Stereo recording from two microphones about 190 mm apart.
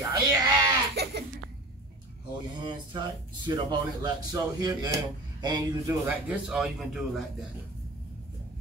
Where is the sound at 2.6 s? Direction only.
25° right (ahead or behind).